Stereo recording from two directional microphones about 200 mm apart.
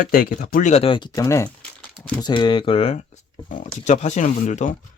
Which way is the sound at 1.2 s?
15° left (ahead or behind).